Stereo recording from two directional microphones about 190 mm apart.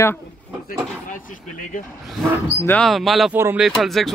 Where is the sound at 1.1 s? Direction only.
45° left (ahead or behind).